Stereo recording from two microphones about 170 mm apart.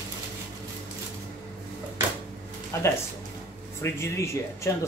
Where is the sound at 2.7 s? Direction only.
15° left (ahead or behind).